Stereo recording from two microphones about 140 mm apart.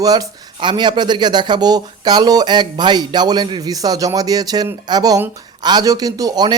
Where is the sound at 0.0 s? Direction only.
25° right (ahead or behind).